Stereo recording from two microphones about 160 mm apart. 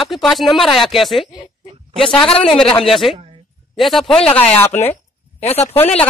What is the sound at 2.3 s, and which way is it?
Speech, 35° left (ahead or behind).